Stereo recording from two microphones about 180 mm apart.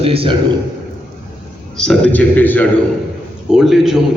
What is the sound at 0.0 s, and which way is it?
Speech, 30° right (ahead or behind).